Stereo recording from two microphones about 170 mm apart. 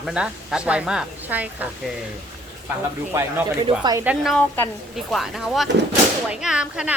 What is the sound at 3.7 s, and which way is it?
Speech, 25° right (ahead or behind).